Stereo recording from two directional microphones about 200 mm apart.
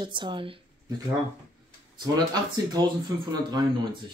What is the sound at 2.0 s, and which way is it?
Speech, 20° right (ahead or behind).